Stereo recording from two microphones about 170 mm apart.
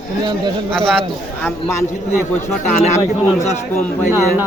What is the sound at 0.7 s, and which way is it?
Speech, 5° left (ahead or behind).